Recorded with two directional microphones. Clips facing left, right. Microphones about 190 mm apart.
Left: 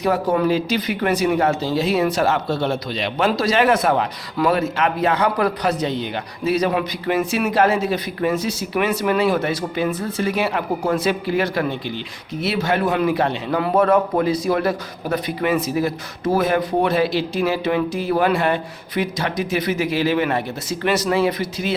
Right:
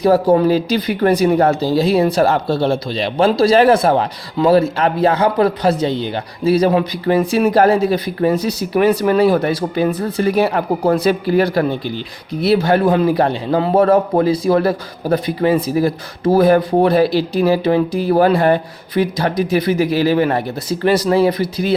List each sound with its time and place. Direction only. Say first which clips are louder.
0.0 s speech: right 6 dB; 30° right (ahead or behind)